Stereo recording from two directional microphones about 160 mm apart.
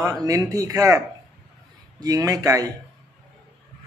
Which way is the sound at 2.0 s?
25° right (ahead or behind).